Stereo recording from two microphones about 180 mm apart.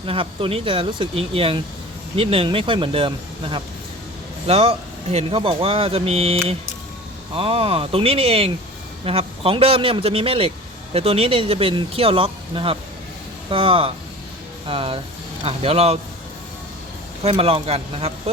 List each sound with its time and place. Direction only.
0.0 s speech: 30° right (ahead or behind)
4.4 s speech: 35° right (ahead or behind)
17.2 s speech: 30° right (ahead or behind)